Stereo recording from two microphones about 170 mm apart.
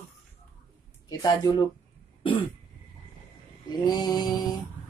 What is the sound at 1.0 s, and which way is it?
Speech, 25° left (ahead or behind).